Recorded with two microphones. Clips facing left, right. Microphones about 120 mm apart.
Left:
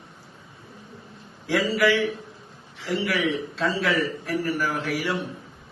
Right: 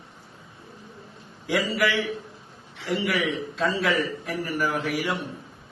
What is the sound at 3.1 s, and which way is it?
A man's voice, centre (ahead or behind).